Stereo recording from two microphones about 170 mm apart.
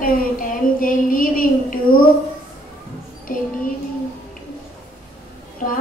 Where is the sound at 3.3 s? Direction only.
55° left (ahead or behind).